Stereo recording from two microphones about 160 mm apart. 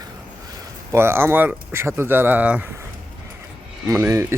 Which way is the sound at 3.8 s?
20° right (ahead or behind).